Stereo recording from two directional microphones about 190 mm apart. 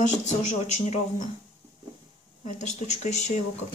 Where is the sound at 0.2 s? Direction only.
40° left (ahead or behind).